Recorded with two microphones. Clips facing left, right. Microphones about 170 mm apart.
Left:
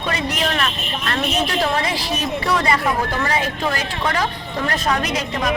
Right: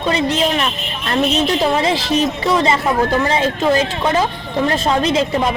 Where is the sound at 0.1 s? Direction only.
25° right (ahead or behind).